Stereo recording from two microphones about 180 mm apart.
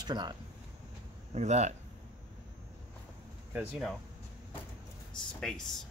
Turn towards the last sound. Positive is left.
turn(degrees=0)  # may be behind; listen again after turning